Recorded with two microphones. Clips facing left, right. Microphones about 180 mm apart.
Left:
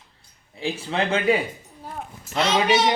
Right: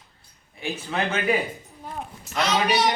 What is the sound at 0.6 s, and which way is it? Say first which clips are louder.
A child's voice: left 2 dB; 30° left (ahead or behind).